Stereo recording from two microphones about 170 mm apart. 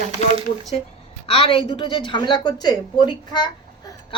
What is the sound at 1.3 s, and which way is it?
A woman's voice, 30° left (ahead or behind).